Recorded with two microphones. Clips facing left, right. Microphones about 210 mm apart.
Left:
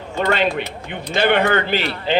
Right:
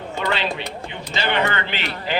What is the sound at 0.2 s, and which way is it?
A man's voice, 50° left (ahead or behind).